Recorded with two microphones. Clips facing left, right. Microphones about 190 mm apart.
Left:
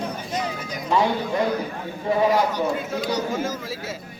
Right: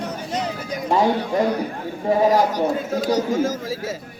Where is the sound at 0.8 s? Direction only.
45° right (ahead or behind).